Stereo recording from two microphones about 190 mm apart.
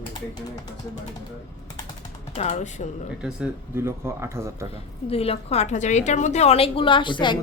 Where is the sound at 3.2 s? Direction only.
10° right (ahead or behind).